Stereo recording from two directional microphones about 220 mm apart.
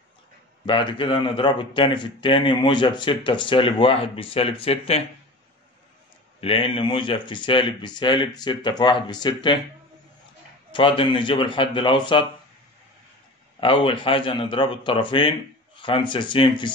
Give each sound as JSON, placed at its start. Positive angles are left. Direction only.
{"t": 0.7, "sound": "speech", "side_deg": 20}
{"t": 6.4, "sound": "speech", "side_deg": 25}
{"t": 10.7, "sound": "speech", "side_deg": 25}
{"t": 13.6, "sound": "speech", "side_deg": 25}